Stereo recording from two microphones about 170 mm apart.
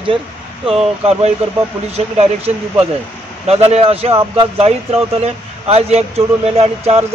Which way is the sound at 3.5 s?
35° right (ahead or behind).